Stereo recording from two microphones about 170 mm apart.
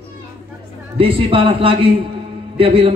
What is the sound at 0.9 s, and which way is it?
A man's voice, 30° right (ahead or behind).